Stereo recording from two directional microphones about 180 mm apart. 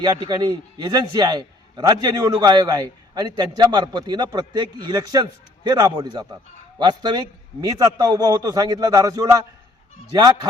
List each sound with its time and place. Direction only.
0.0 s a man's voice: 25° right (ahead or behind)